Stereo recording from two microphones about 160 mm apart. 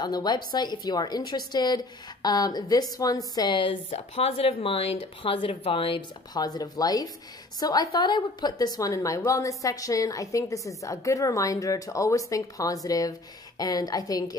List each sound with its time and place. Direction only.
0.0 s a woman's voice: 25° left (ahead or behind)